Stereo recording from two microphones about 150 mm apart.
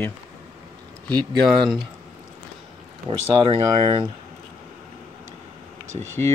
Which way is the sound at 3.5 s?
30° right (ahead or behind).